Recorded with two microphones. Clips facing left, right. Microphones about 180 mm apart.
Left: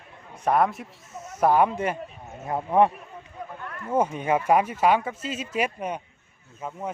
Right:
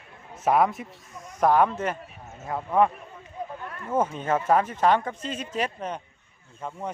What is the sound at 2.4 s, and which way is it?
Speech, 20° left (ahead or behind).